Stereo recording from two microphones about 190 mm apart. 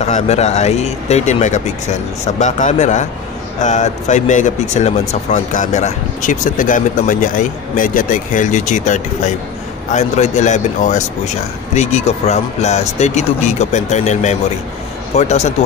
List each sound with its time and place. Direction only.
0.0 s speech: 35° left (ahead or behind)